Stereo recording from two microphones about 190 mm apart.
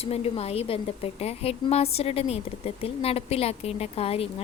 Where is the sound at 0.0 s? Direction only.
30° left (ahead or behind).